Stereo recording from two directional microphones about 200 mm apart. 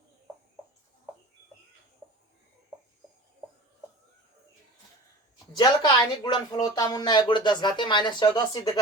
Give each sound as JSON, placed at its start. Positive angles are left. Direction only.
{"t": 5.5, "sound": "speech", "side_deg": 20}